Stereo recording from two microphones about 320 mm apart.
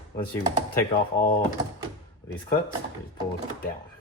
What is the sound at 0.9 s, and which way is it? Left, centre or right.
Speech, left.